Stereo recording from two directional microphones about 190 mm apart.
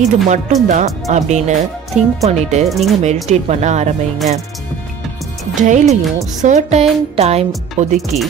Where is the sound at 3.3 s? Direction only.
35° right (ahead or behind).